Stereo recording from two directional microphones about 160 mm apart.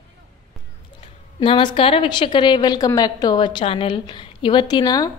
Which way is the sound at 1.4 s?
30° left (ahead or behind).